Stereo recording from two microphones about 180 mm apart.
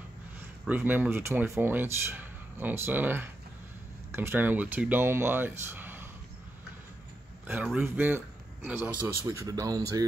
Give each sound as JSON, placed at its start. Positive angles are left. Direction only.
{"t": 0.7, "sound": "speech", "side_deg": -10}
{"t": 7.4, "sound": "speech", "side_deg": -10}